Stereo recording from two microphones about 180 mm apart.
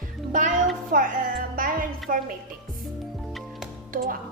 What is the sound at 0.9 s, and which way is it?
A woman's voice, 50° right (ahead or behind).